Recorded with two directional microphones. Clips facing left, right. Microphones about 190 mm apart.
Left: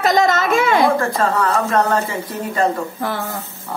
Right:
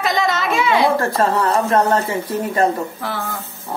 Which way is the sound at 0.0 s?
45° left (ahead or behind).